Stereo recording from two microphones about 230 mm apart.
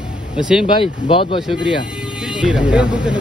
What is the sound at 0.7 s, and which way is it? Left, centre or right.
Speech, left.